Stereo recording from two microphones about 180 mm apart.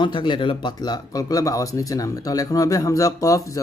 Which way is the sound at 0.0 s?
25° left (ahead or behind).